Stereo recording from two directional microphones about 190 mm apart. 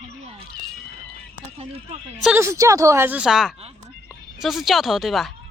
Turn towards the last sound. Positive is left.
turn(degrees=0)  # may be behind; listen again after turning